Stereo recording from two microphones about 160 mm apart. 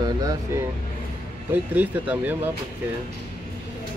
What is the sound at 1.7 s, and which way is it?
Speech, 10° right (ahead or behind).